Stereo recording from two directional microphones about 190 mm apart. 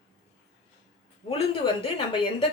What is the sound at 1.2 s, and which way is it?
Speech, 30° left (ahead or behind).